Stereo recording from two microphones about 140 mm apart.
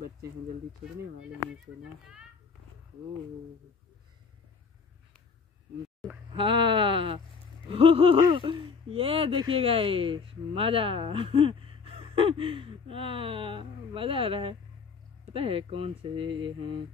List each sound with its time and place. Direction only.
6.3 s speech: 35° right (ahead or behind)